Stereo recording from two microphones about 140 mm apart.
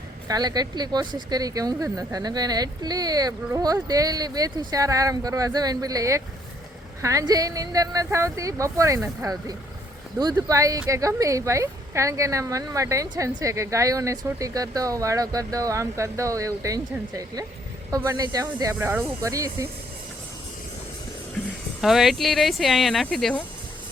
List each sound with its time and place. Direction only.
0.3 s speech: 30° right (ahead or behind)
17.9 s speech: 25° right (ahead or behind)
21.8 s speech: centre (ahead or behind)